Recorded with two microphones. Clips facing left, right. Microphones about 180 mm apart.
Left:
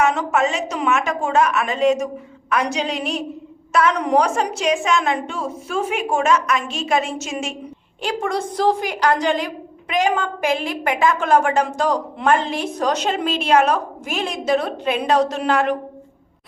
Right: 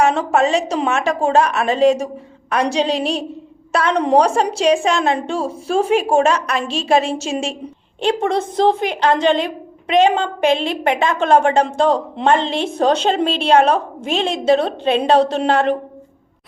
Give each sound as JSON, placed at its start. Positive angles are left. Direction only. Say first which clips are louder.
{"t": 0.0, "sound": "a woman's voice", "louder": "right 3 dB", "side_deg": -30}